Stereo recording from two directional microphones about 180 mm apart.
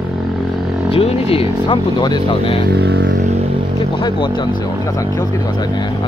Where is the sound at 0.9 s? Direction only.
35° left (ahead or behind).